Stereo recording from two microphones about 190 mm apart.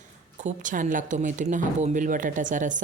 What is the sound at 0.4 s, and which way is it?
Speech, 45° right (ahead or behind).